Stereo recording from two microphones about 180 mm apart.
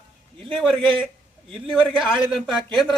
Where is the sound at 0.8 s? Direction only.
30° right (ahead or behind).